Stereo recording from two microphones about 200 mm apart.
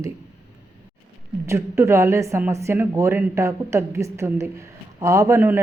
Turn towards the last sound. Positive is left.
turn(degrees=-10)  # may be behind; listen again after turning